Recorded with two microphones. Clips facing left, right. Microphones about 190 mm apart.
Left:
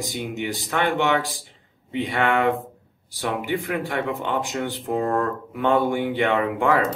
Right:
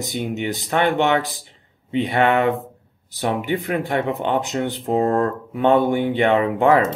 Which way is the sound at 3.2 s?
35° right (ahead or behind).